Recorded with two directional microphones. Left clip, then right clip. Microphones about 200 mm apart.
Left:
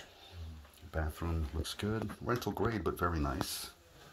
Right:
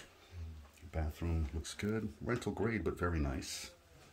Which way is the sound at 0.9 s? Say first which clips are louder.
Left 4 dB; 5° right (ahead or behind).